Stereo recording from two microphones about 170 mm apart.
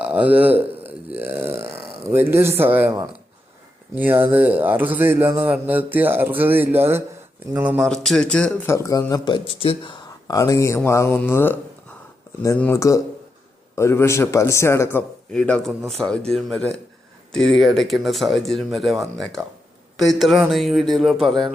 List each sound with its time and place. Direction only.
0.0 s burping: 10° right (ahead or behind)
3.9 s a man's voice: 10° right (ahead or behind)
7.9 s a man's voice: centre (ahead or behind)
8.7 s a man's voice: 15° left (ahead or behind); by 21.5 s centre (ahead or behind)